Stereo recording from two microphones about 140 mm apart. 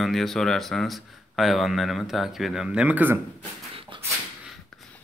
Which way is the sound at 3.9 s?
35° right (ahead or behind).